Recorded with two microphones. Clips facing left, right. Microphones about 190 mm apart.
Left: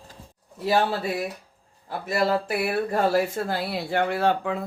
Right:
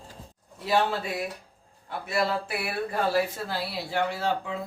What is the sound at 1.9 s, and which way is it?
Speech, 40° left (ahead or behind).